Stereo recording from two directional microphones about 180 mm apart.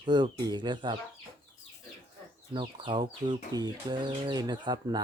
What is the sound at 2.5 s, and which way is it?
Speech, 25° right (ahead or behind).